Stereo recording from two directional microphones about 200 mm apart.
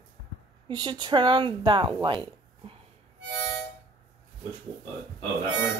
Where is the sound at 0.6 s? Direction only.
20° right (ahead or behind).